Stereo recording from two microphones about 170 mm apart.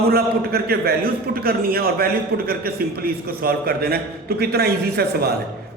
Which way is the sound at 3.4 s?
65° right (ahead or behind).